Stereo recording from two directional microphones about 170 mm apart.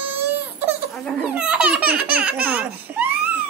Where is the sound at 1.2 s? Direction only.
5° right (ahead or behind).